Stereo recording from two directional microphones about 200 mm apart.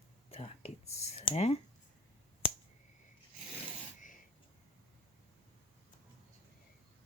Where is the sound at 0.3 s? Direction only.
30° left (ahead or behind).